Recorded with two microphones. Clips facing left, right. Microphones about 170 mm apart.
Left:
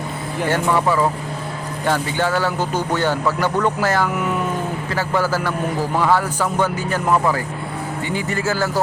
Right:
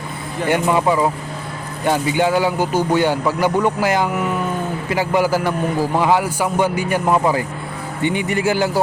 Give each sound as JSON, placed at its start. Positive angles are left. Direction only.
{"t": 0.4, "sound": "a man's voice", "side_deg": -15}